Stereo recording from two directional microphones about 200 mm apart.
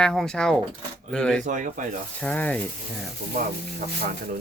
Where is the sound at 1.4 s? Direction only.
40° right (ahead or behind).